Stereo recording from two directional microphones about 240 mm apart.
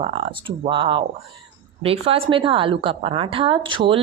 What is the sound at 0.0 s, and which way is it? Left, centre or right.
A woman's voice, right.